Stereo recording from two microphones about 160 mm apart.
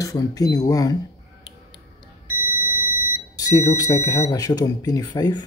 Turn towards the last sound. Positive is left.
turn(degrees=25)  # may be behind; listen again after turning